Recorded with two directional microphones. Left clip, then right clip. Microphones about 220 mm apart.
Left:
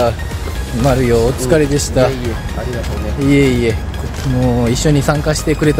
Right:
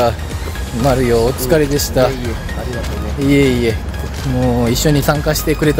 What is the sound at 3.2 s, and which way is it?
Speech, 15° right (ahead or behind).